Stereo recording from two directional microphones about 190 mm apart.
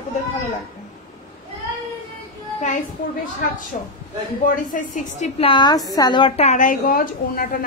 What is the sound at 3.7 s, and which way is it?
A woman's voice, 45° left (ahead or behind).